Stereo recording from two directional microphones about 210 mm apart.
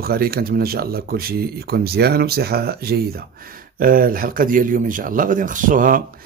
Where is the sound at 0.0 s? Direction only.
45° right (ahead or behind).